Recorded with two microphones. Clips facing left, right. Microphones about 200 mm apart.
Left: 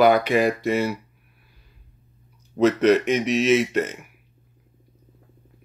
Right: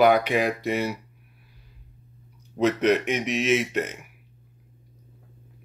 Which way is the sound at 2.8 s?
15° right (ahead or behind).